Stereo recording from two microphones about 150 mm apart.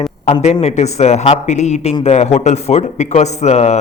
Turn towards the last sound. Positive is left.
turn(degrees=45)  # may be behind; listen again after turning